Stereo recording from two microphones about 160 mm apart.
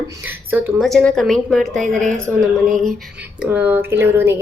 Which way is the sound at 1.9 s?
55° right (ahead or behind).